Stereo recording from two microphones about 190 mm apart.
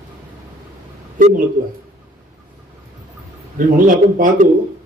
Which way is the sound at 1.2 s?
45° right (ahead or behind).